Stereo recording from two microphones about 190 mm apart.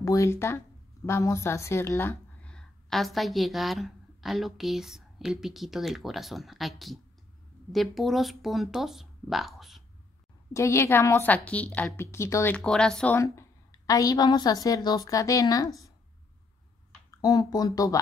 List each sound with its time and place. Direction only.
0.0 s a woman's voice: 15° left (ahead or behind); by 9.8 s centre (ahead or behind)
10.5 s a woman's voice: 15° left (ahead or behind)
17.1 s speech: 20° left (ahead or behind)